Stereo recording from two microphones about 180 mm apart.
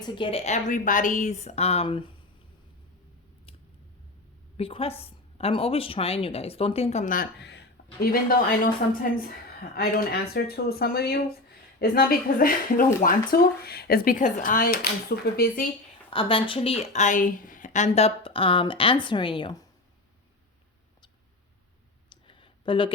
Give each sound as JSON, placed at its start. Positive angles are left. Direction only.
{"t": 0.0, "sound": "a woman's voice", "side_deg": 25}
{"t": 4.5, "sound": "a woman's voice", "side_deg": 30}
{"t": 8.0, "sound": "a woman's voice", "side_deg": 55}
{"t": 16.0, "sound": "speech", "side_deg": 30}
{"t": 22.1, "sound": "a sound", "side_deg": 25}